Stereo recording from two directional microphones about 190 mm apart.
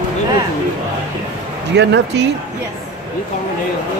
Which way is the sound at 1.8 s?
60° right (ahead or behind).